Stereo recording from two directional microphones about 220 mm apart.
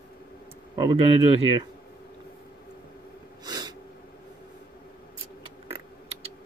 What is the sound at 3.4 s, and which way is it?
Snort, 20° right (ahead or behind).